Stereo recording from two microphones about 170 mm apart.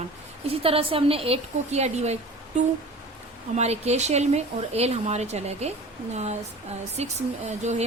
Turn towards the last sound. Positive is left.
turn(degrees=-40)  # may be behind; listen again after turning